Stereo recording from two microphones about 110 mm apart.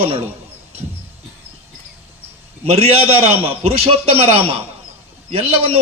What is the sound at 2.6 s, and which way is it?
A man's voice, 65° right (ahead or behind).